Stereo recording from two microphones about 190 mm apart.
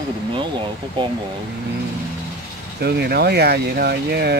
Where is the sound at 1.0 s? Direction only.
25° right (ahead or behind).